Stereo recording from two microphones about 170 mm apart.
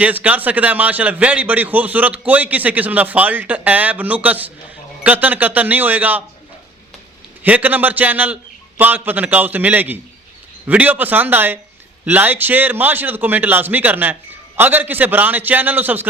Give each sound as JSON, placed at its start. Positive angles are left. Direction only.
{"t": 0.0, "sound": "a man's voice", "side_deg": -10}
{"t": 7.4, "sound": "a man's voice", "side_deg": -10}